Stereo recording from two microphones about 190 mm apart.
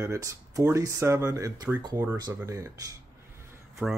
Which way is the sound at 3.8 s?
10° right (ahead or behind).